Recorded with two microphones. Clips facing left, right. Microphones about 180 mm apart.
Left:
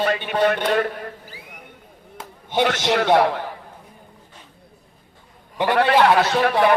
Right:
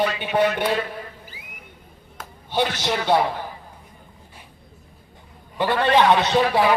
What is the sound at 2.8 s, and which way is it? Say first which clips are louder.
Speech: left 4 dB; 75° left (ahead or behind).